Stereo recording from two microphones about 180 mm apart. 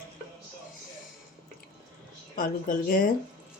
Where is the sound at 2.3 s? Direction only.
50° left (ahead or behind).